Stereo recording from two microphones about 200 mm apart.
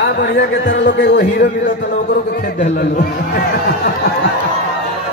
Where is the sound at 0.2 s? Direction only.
60° left (ahead or behind).